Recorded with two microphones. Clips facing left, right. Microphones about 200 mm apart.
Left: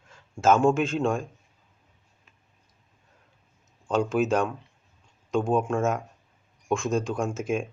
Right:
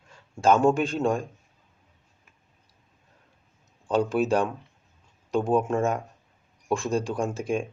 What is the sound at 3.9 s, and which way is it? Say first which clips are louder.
Speech: right 1 dB; centre (ahead or behind).